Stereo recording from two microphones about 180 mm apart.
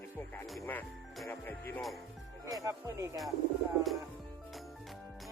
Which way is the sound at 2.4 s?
20° right (ahead or behind).